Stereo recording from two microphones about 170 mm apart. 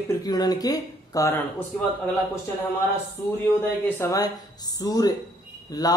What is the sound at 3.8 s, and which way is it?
Speech, 15° left (ahead or behind).